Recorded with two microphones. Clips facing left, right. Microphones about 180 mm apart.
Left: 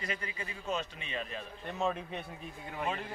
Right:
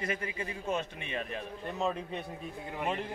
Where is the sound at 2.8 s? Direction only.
15° right (ahead or behind).